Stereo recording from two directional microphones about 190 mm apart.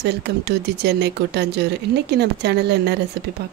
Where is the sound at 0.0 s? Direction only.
60° right (ahead or behind).